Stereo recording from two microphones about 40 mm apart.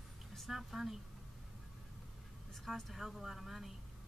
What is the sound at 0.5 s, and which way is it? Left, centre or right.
Speech, centre.